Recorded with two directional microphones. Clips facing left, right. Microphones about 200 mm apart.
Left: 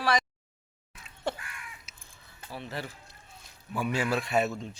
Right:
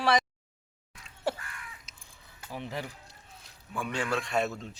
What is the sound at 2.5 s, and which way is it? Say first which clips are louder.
Speech: right 1 dB; 15° right (ahead or behind).